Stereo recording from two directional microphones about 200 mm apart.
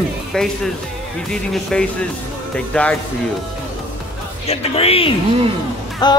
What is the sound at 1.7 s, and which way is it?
Speech, 5° left (ahead or behind).